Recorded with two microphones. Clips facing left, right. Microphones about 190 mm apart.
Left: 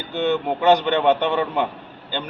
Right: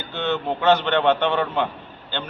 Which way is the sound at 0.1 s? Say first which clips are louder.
Left 3 dB; 15° left (ahead or behind).